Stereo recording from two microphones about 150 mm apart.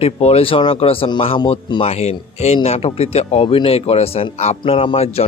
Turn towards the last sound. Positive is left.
turn(degrees=40)  # may be behind; listen again after turning